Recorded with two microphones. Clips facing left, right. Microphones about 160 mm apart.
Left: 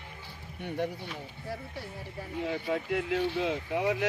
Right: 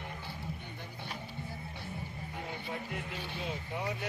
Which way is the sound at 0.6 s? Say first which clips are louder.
Left 14 dB; 70° left (ahead or behind).